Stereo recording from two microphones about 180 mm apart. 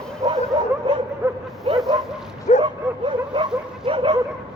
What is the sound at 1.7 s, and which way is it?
Bow-wow, 30° right (ahead or behind).